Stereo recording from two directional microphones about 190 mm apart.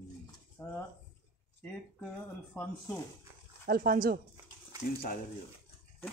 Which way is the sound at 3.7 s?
50° right (ahead or behind).